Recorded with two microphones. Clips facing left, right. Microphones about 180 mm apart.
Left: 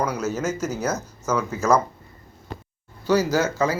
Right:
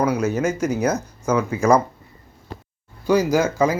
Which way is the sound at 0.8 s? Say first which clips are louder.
Right 5 dB; 15° right (ahead or behind).